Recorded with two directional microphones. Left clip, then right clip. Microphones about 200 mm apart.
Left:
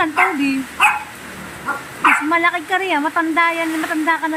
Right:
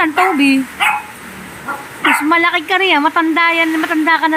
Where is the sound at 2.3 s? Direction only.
15° right (ahead or behind).